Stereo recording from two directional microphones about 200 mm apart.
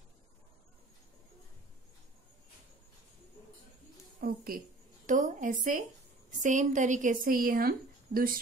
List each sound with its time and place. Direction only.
4.2 s a woman's voice: 45° right (ahead or behind)